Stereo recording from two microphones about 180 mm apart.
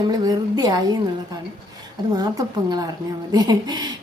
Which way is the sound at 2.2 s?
20° right (ahead or behind).